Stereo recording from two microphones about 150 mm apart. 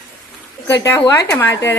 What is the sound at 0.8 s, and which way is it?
Speech, 15° left (ahead or behind).